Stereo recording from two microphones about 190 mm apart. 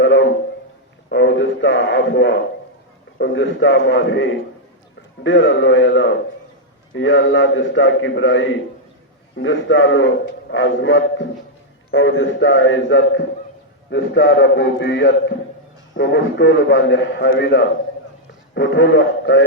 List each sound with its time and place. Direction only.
0.0 s a sound: 70° left (ahead or behind)
3.2 s a man's voice: 70° left (ahead or behind)
11.9 s a man's voice: 85° left